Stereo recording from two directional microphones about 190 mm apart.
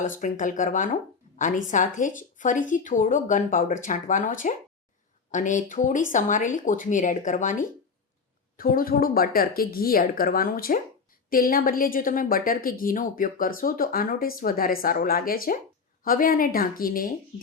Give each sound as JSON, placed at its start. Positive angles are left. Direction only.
{"t": 0.2, "sound": "a woman's voice", "side_deg": 40}
{"t": 8.5, "sound": "a woman's voice", "side_deg": 50}